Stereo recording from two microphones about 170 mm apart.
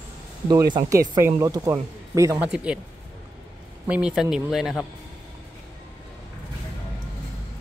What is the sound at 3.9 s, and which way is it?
Speech, 5° right (ahead or behind).